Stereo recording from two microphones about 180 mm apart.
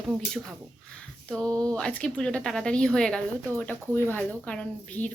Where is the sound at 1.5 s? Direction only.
20° right (ahead or behind).